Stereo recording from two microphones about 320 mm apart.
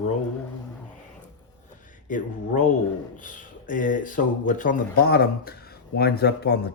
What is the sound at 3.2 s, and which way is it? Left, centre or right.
Speech, left.